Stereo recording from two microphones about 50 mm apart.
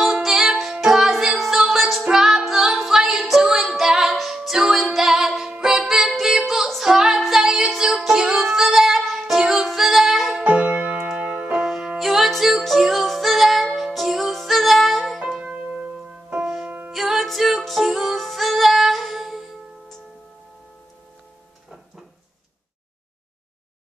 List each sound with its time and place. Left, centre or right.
0.0 s music: centre
6.4 s female singing: centre
7.2 s music: centre
10.4 s music: right
11.6 s music: centre
15.1 s music: centre
15.4 s music: right
16.3 s music: centre